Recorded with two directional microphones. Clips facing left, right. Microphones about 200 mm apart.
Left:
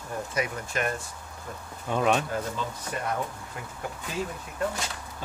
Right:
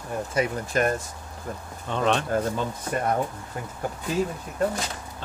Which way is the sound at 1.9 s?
10° left (ahead or behind).